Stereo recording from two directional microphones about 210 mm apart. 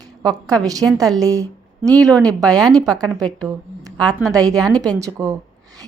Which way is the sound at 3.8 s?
20° right (ahead or behind).